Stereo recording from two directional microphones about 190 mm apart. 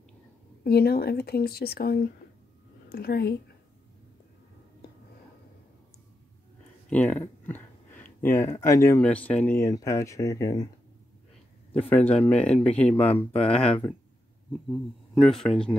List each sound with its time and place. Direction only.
0.7 s speech: 55° left (ahead or behind)
6.9 s a sound: 5° left (ahead or behind)
8.5 s speech: 15° left (ahead or behind)
11.9 s speech: 10° left (ahead or behind)